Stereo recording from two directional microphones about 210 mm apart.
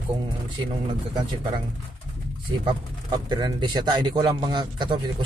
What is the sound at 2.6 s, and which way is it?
Speech, 20° right (ahead or behind).